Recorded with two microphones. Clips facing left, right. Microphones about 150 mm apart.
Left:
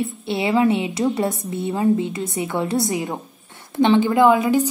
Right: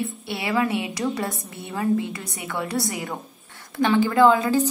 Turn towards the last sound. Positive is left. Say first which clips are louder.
# left 2 dB
turn(degrees=15)  # may be behind; listen again after turning